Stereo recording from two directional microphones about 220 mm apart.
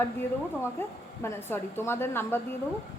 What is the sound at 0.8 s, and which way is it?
A woman's voice, 10° left (ahead or behind).